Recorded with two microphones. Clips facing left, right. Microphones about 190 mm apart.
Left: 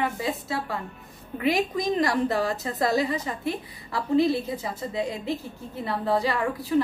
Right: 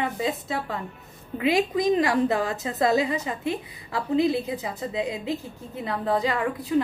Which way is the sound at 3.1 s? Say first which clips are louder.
Right 1 dB; 15° right (ahead or behind).